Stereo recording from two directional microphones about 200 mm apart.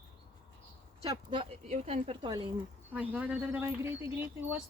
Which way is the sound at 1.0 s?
25° right (ahead or behind).